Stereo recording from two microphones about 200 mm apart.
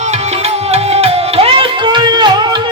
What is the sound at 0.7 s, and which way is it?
Music, 30° right (ahead or behind).